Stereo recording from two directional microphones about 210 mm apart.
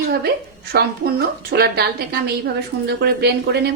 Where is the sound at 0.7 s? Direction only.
50° right (ahead or behind).